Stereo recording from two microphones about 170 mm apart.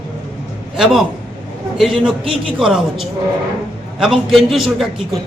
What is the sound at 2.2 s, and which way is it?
Speech, 30° right (ahead or behind).